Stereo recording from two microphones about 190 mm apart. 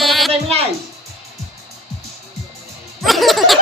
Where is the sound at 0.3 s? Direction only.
30° right (ahead or behind).